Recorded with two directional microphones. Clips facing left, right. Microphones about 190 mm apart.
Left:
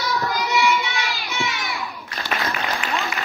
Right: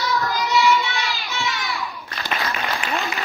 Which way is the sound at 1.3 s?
15° left (ahead or behind).